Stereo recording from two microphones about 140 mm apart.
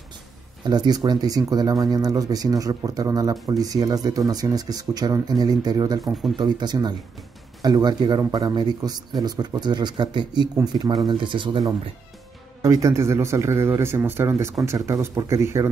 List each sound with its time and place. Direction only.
0.7 s speech: 30° right (ahead or behind)
12.6 s speech: 20° right (ahead or behind)